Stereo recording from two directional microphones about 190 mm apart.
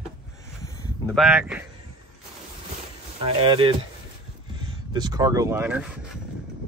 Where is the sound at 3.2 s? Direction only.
25° right (ahead or behind).